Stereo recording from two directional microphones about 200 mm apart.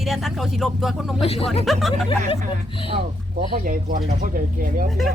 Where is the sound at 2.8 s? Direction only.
25° right (ahead or behind).